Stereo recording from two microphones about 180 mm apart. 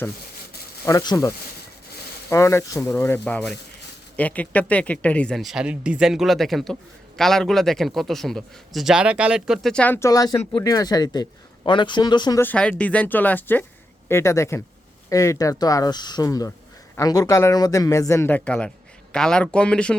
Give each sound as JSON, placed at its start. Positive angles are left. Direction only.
{"t": 0.9, "sound": "speech", "side_deg": 20}
{"t": 2.3, "sound": "a man's voice", "side_deg": 15}
{"t": 12.4, "sound": "a man's voice", "side_deg": 10}